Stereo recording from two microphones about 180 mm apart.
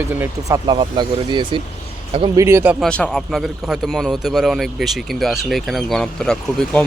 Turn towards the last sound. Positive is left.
turn(degrees=5)  # may be behind; listen again after turning